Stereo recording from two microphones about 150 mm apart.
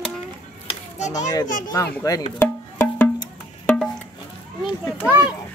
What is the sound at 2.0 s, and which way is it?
Music, 20° left (ahead or behind).